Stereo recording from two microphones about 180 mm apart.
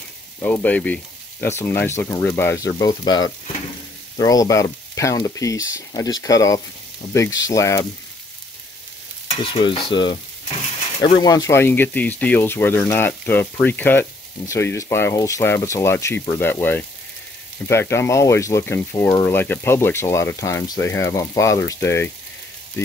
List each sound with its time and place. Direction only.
0.4 s speech: 10° left (ahead or behind)
9.3 s speech: 30° left (ahead or behind); by 22.1 s 15° left (ahead or behind)